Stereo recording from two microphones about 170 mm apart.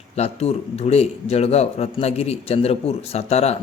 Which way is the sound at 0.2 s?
40° left (ahead or behind).